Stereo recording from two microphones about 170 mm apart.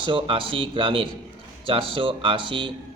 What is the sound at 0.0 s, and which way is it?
A man's voice, 30° right (ahead or behind).